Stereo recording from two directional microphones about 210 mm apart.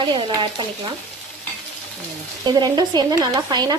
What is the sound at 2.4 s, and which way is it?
A woman's voice, 20° right (ahead or behind).